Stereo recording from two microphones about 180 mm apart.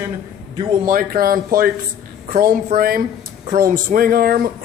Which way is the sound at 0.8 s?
50° right (ahead or behind).